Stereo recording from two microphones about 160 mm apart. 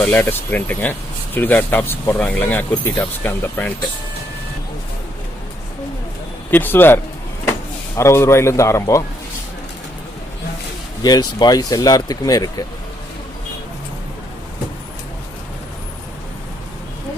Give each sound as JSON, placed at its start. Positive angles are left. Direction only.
{"t": 0.0, "sound": "speech", "side_deg": 10}
{"t": 6.5, "sound": "speech", "side_deg": 10}
{"t": 11.0, "sound": "speech", "side_deg": 25}